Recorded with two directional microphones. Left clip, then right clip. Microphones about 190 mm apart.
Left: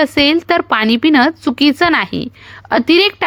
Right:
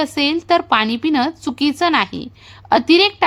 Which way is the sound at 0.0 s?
25° left (ahead or behind).